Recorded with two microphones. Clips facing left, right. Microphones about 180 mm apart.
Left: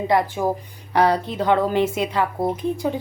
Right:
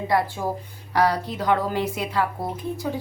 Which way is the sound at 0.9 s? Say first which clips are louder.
Left 3 dB; 25° left (ahead or behind).